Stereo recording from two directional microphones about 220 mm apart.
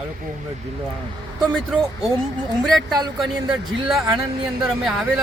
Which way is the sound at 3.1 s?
Centre (ahead or behind).